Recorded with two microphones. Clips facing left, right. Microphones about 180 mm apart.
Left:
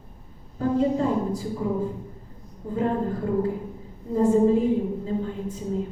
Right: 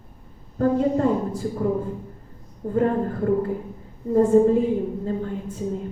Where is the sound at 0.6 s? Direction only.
55° right (ahead or behind).